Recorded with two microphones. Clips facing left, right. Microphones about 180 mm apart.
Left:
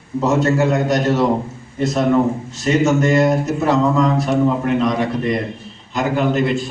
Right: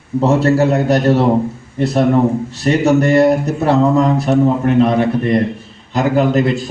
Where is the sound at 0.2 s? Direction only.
30° right (ahead or behind).